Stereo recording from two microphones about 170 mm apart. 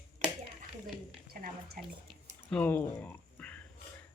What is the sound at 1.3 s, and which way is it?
Speech, 65° right (ahead or behind).